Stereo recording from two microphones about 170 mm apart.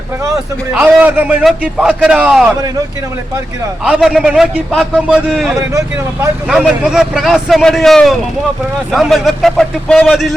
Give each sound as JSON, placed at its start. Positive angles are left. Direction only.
{"t": 0.7, "sound": "a man's voice", "side_deg": -5}
{"t": 3.8, "sound": "a man's voice", "side_deg": 0}
{"t": 5.5, "sound": "a man's voice", "side_deg": -15}
{"t": 6.5, "sound": "a man's voice", "side_deg": -5}